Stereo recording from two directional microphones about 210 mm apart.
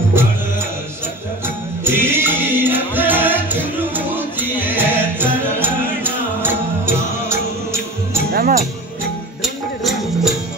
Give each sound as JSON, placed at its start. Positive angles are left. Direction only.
{"t": 1.9, "sound": "music", "side_deg": -10}
{"t": 8.3, "sound": "music", "side_deg": -45}
{"t": 9.4, "sound": "music", "side_deg": 0}